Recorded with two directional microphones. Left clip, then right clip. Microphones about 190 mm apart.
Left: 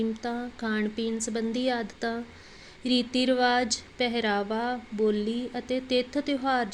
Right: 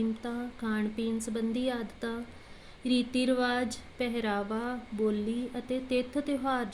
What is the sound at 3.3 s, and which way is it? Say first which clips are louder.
A woman's voice: left 7 dB; 25° left (ahead or behind).